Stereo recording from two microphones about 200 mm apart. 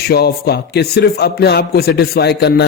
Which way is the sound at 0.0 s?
50° left (ahead or behind).